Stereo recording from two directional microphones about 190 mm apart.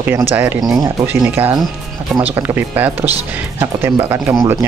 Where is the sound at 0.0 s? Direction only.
10° right (ahead or behind).